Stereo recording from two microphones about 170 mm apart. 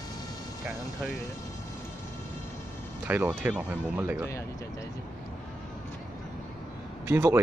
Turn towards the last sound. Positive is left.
turn(degrees=-15)  # may be behind; listen again after turning